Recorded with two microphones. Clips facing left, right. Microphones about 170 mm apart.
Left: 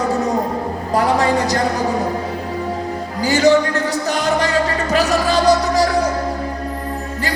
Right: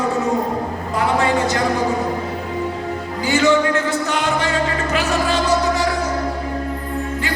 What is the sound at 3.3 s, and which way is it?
Music, 40° left (ahead or behind).